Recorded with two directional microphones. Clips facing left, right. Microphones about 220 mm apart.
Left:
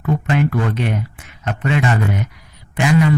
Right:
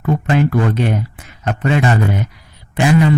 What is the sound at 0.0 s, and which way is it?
Speech, 40° right (ahead or behind).